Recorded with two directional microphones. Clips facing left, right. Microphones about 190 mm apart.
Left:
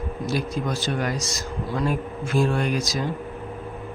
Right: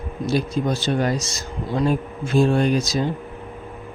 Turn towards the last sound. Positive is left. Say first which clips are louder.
# right 5 dB
turn(degrees=-25)  # may be behind; listen again after turning